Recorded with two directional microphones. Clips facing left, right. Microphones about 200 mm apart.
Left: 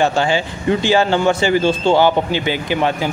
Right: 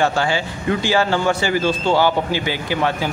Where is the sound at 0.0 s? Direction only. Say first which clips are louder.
Left 3 dB; 20° left (ahead or behind).